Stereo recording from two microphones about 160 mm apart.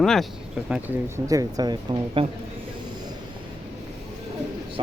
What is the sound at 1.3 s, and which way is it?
Speech, 20° right (ahead or behind).